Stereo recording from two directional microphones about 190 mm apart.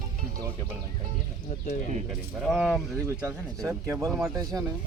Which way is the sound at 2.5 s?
Centre (ahead or behind).